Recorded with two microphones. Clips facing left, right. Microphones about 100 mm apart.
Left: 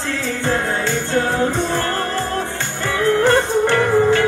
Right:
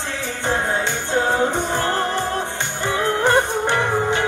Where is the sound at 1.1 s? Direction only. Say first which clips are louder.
Right 1 dB; 20° right (ahead or behind).